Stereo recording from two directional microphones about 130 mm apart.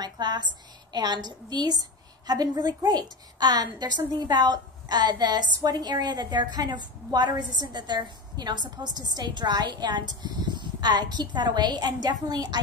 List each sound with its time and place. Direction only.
0.0 s a woman's voice: 35° right (ahead or behind)